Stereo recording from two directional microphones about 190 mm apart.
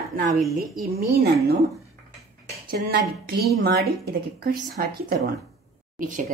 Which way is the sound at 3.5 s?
55° right (ahead or behind).